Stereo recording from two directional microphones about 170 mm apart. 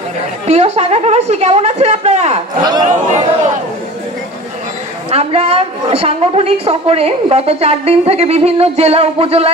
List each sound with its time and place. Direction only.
0.5 s a woman's voice: 40° right (ahead or behind)
2.6 s speech: 25° right (ahead or behind)
5.1 s a woman's voice: 35° right (ahead or behind)